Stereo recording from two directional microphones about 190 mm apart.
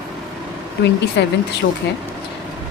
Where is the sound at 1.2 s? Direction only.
65° left (ahead or behind).